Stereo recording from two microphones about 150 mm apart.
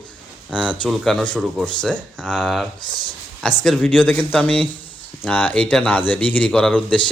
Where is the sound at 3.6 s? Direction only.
5° left (ahead or behind).